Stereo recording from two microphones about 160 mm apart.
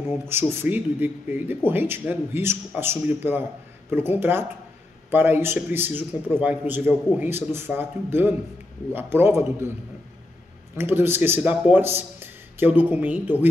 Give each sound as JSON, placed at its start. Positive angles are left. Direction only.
{"t": 0.2, "sound": "speech", "side_deg": -15}
{"t": 10.8, "sound": "speech", "side_deg": -15}